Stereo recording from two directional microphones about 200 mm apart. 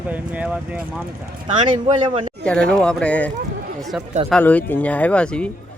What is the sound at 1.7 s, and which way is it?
Speech, 25° right (ahead or behind).